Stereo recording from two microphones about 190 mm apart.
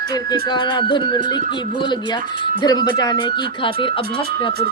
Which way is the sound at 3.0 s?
20° left (ahead or behind).